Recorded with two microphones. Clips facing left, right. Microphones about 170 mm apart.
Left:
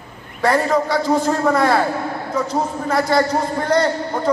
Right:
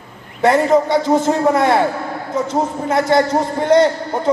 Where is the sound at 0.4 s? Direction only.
20° right (ahead or behind).